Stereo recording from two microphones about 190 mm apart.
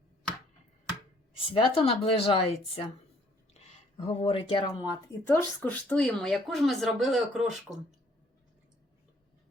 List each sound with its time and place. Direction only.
1.5 s speech: 30° left (ahead or behind)
3.6 s a sound: 35° left (ahead or behind)
4.0 s a woman's voice: 30° left (ahead or behind); by 7.9 s centre (ahead or behind)